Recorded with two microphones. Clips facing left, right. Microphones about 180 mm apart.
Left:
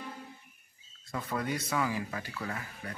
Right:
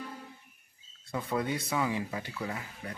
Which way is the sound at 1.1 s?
20° right (ahead or behind).